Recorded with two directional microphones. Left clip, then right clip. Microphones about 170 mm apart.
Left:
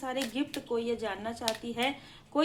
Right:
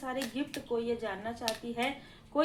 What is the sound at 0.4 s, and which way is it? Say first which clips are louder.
A woman's voice: left 2 dB; 30° left (ahead or behind).